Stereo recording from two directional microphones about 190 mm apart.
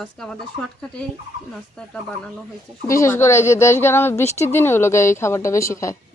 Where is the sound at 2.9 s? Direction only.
15° left (ahead or behind).